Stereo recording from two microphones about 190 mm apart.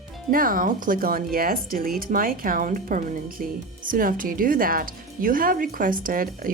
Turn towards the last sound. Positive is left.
turn(degrees=-45)  # may be behind; listen again after turning